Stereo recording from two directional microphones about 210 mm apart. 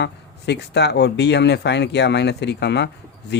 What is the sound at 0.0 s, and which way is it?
Speech, 55° left (ahead or behind).